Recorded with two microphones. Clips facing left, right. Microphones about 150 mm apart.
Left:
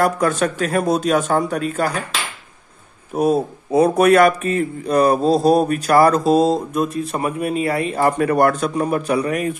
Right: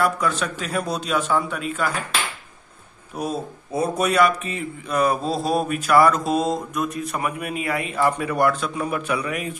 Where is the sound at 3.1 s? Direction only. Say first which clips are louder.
Left 10 dB; 55° left (ahead or behind).